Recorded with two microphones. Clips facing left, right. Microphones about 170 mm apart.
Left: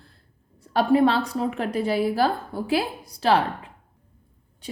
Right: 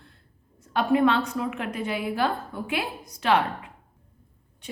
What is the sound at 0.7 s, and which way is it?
Speech, 35° left (ahead or behind).